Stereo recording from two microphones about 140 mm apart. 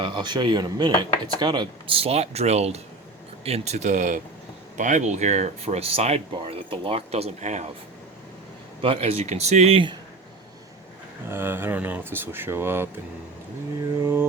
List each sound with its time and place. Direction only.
0.0 s speech: 35° right (ahead or behind); by 7.7 s 55° right (ahead or behind)
8.8 s speech: 45° right (ahead or behind)
11.3 s speech: 15° right (ahead or behind)
14.0 s mantra: 20° right (ahead or behind)